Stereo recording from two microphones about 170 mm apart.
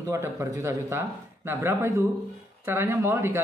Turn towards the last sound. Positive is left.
turn(degrees=-15)  # may be behind; listen again after turning